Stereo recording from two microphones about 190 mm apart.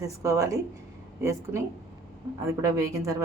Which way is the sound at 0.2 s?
15° right (ahead or behind).